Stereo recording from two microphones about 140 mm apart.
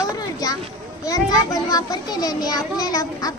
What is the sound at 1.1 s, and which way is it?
Speech, 25° left (ahead or behind).